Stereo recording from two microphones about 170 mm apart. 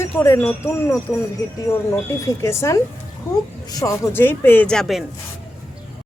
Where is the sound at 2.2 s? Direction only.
15° left (ahead or behind).